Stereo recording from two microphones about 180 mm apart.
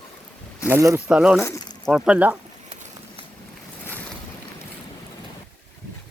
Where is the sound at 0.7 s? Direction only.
15° right (ahead or behind).